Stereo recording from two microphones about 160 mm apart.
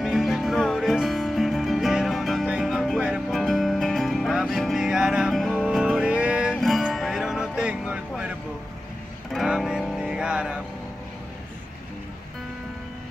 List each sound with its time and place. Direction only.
0.0 s music: centre (ahead or behind)